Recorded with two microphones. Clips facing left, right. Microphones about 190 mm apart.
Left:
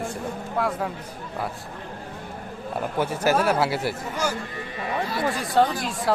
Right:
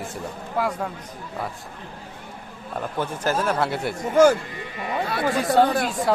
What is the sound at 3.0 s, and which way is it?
Speech, 10° left (ahead or behind).